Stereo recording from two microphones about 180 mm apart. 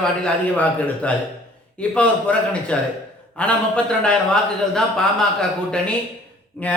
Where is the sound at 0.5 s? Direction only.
10° left (ahead or behind).